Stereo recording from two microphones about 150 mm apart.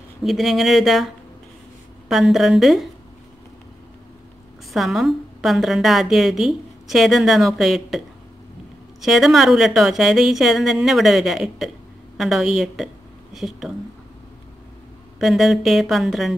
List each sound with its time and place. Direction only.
0.2 s a woman's voice: centre (ahead or behind)
4.7 s a woman's voice: centre (ahead or behind)
9.0 s a woman's voice: centre (ahead or behind)
15.1 s a woman's voice: centre (ahead or behind)